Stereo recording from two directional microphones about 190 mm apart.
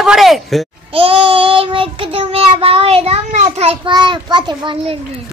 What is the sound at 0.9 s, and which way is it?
Child singing, 30° right (ahead or behind).